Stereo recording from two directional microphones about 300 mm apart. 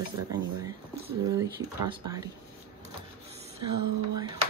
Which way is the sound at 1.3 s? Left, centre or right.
Centre.